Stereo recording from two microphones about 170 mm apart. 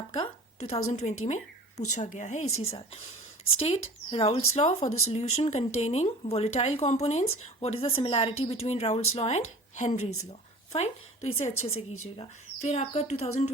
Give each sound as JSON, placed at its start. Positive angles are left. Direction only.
{"t": 0.1, "sound": "a woman's voice", "side_deg": 35}